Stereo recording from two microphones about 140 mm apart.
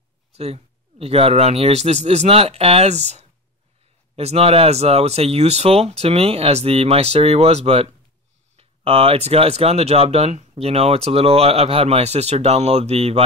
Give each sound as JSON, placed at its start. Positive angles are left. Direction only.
{"t": 0.3, "sound": "speech", "side_deg": -50}